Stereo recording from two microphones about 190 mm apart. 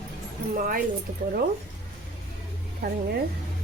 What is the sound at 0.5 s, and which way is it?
Speech, 45° right (ahead or behind).